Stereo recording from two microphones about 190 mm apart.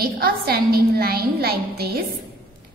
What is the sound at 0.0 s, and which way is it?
A woman's voice, 50° right (ahead or behind).